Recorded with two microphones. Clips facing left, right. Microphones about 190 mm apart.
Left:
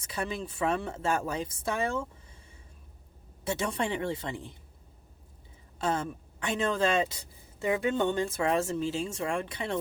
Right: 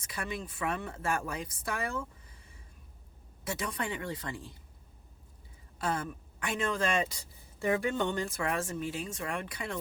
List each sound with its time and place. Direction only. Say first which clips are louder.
0.0 s speech: left 4 dB; 25° left (ahead or behind)
3.4 s speech: left 5 dB; 30° left (ahead or behind)
5.8 s speech: left 3 dB; 25° left (ahead or behind)